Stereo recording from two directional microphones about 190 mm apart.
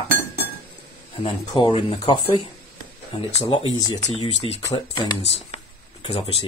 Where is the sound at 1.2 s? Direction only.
25° left (ahead or behind).